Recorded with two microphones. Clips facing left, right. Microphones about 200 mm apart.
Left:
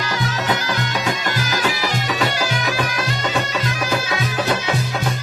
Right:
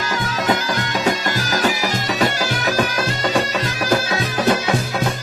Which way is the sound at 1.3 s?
45° right (ahead or behind).